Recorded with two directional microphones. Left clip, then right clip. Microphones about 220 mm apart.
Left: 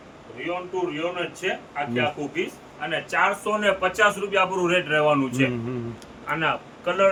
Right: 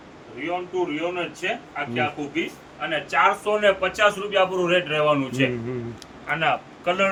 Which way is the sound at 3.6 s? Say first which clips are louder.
Right 1 dB; 15° left (ahead or behind).